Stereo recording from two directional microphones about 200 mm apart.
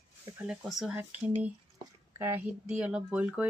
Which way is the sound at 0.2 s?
10° right (ahead or behind).